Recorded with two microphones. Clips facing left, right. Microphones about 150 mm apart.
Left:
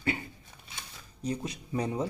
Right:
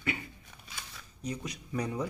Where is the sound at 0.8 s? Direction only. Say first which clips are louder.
Left 4 dB; 30° left (ahead or behind).